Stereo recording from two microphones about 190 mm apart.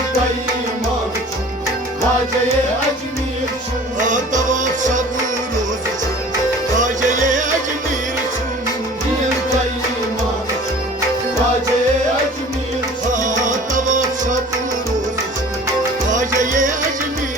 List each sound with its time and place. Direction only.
4.0 s music: 40° right (ahead or behind)
6.7 s music: 40° right (ahead or behind)
13.1 s music: 40° right (ahead or behind)
16.1 s music: 40° right (ahead or behind)